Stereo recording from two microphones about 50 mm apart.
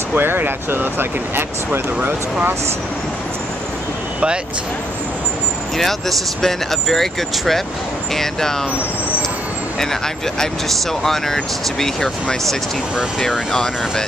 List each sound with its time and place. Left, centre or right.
0.1 s speech: right
5.8 s speech: centre
9.8 s speech: centre